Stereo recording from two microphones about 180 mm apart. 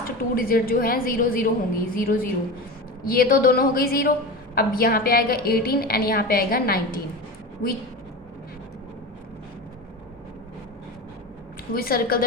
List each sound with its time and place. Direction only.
0.0 s a woman's voice: 55° left (ahead or behind)
11.7 s a woman's voice: 55° left (ahead or behind)